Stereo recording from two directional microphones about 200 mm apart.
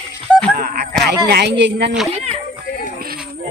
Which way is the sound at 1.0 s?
55° right (ahead or behind).